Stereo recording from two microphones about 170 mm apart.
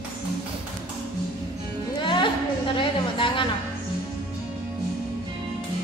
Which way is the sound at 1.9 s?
30° left (ahead or behind).